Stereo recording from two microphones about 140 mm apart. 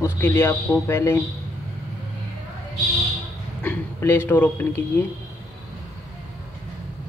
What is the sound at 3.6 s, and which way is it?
Speech, 15° left (ahead or behind).